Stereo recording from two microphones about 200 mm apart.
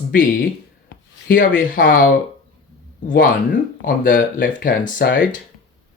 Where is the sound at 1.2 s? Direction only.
45° left (ahead or behind).